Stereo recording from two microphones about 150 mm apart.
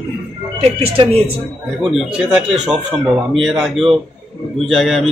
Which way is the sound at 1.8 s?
5° right (ahead or behind).